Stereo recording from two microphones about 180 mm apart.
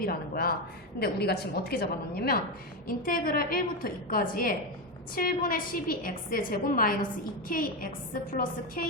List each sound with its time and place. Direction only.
0.0 s a woman's voice: 55° left (ahead or behind)